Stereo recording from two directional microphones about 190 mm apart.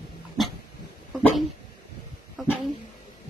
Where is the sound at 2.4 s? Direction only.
Centre (ahead or behind).